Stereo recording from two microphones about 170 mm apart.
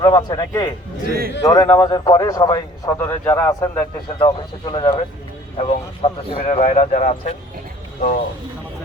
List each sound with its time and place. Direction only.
0.0 s a man's voice: 25° left (ahead or behind)
1.0 s a man's voice: 65° right (ahead or behind)
1.5 s a man's voice: 20° left (ahead or behind)
4.2 s a man's voice: 25° left (ahead or behind)
5.5 s a man's voice: 40° left (ahead or behind)